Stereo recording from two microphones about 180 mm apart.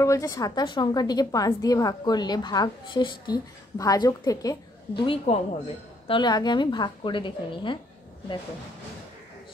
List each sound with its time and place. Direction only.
0.0 s a woman's voice: 15° left (ahead or behind)
5.0 s a woman's voice: 35° left (ahead or behind)